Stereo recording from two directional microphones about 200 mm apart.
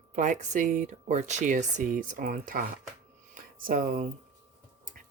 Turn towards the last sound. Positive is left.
turn(degrees=-45)  # may be behind; listen again after turning